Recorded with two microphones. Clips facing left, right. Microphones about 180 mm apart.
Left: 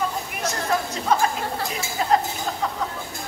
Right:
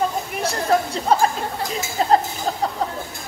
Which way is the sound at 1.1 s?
30° right (ahead or behind).